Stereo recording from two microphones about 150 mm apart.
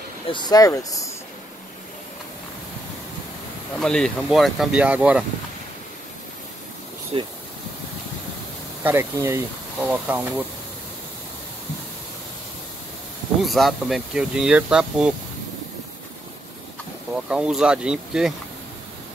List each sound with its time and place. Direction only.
0.3 s speech: 30° left (ahead or behind)
3.7 s speech: 5° left (ahead or behind)
7.1 s speech: 35° right (ahead or behind)
8.8 s speech: 15° right (ahead or behind)
13.5 s speech: centre (ahead or behind)
17.1 s speech: 5° right (ahead or behind)